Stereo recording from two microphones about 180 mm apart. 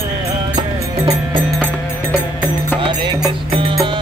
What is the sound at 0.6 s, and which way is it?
Music, 25° right (ahead or behind).